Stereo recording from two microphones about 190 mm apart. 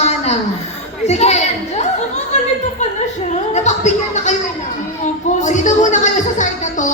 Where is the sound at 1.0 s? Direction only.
35° left (ahead or behind).